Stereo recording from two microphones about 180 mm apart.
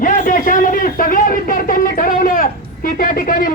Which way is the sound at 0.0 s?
50° left (ahead or behind).